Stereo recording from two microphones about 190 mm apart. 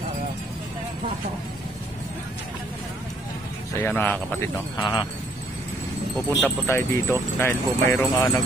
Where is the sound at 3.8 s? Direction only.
10° left (ahead or behind).